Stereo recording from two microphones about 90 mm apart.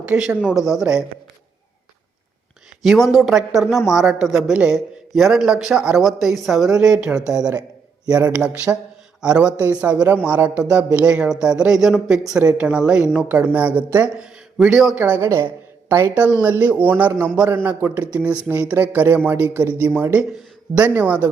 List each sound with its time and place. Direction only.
0.1 s a man's voice: 5° right (ahead or behind)
2.8 s a man's voice: 5° right (ahead or behind)
14.9 s a man's voice: 15° right (ahead or behind)
15.2 s a man's voice: 30° right (ahead or behind)
20.7 s a man's voice: 15° right (ahead or behind)